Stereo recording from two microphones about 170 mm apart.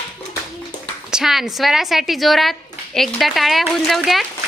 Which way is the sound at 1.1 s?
5° right (ahead or behind).